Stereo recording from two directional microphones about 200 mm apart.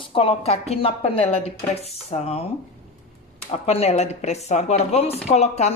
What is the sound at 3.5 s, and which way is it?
A woman's voice, 30° left (ahead or behind).